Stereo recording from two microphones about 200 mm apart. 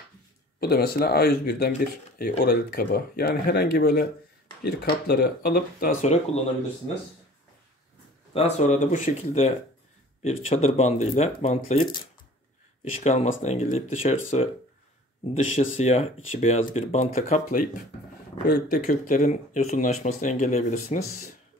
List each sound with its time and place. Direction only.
0.6 s speech: 50° left (ahead or behind); by 6.5 s 35° left (ahead or behind)
8.3 s speech: 30° left (ahead or behind)
13.0 s speech: 30° left (ahead or behind)